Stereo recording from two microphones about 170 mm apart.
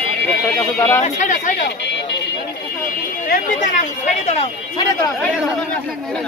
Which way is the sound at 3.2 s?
55° left (ahead or behind).